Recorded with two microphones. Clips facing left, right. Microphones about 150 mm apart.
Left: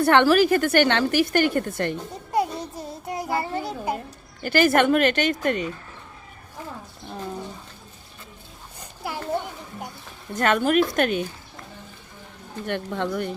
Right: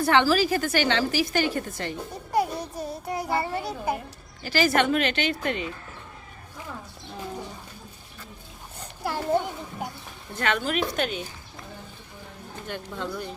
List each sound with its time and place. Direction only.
0.0 s a woman's voice: 60° left (ahead or behind)
2.3 s music: 25° left (ahead or behind)
2.9 s a child's voice: 20° left (ahead or behind)
4.4 s speech: 55° left (ahead or behind)
8.8 s a sound: 5° left (ahead or behind)
10.3 s speech: 45° left (ahead or behind)
12.6 s a woman's voice: 65° left (ahead or behind)